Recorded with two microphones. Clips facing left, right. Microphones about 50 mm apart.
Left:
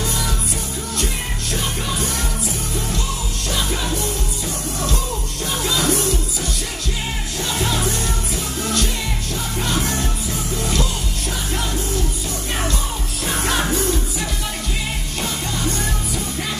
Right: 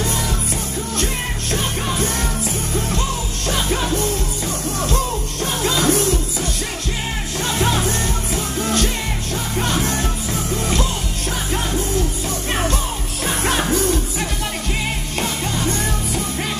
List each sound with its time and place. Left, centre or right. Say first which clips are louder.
5.8 s music: right 3 dB; right
7.6 s music: right 3 dB; right
9.6 s music: right 2 dB; right